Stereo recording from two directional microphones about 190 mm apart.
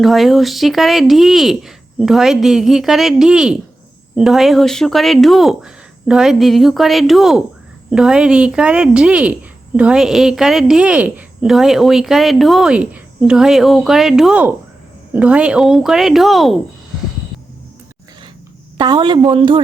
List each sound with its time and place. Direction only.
0.0 s a woman's voice: centre (ahead or behind)
18.8 s a woman's voice: 20° right (ahead or behind)